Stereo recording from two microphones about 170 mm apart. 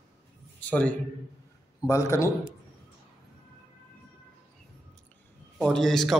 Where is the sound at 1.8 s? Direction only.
15° left (ahead or behind).